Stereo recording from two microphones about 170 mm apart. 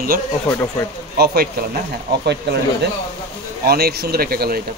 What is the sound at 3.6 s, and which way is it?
Speech, 65° right (ahead or behind).